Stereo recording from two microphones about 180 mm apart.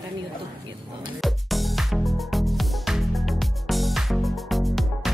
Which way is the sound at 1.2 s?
Centre (ahead or behind).